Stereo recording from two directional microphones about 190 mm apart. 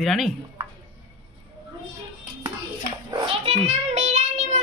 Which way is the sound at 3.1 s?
30° right (ahead or behind).